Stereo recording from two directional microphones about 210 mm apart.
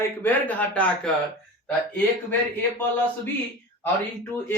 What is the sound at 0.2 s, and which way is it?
Speech, 10° left (ahead or behind).